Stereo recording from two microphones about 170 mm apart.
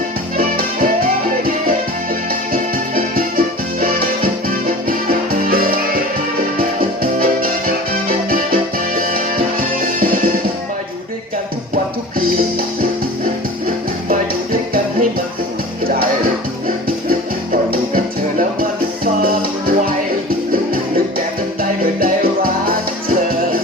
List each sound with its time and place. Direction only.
0.3 s music: 60° right (ahead or behind)
2.5 s music: 55° right (ahead or behind)
9.0 s music: 60° right (ahead or behind)
17.7 s music: 55° right (ahead or behind)
21.6 s music: 55° right (ahead or behind)